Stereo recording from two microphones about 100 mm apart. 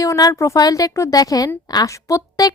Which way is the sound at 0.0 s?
35° left (ahead or behind).